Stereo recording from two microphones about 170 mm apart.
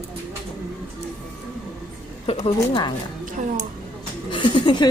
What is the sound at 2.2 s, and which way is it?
Speech, 35° left (ahead or behind).